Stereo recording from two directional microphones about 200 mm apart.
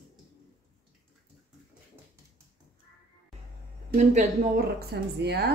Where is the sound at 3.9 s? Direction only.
30° right (ahead or behind).